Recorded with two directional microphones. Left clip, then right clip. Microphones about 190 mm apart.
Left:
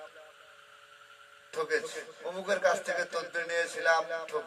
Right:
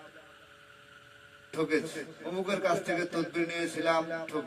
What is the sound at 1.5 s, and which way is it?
A man's voice, 30° left (ahead or behind).